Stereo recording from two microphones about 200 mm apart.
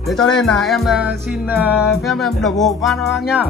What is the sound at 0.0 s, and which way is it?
Speech, centre (ahead or behind).